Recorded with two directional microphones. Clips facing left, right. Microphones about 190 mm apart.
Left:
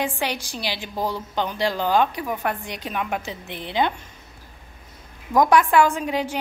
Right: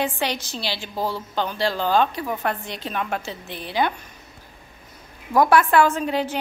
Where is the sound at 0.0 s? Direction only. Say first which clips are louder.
Right 1 dB; 10° left (ahead or behind).